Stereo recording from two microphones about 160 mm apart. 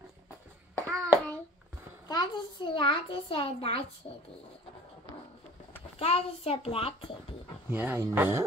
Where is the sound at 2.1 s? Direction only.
25° left (ahead or behind).